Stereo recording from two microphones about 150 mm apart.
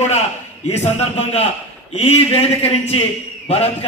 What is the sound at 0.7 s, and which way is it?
A man's voice, 45° left (ahead or behind).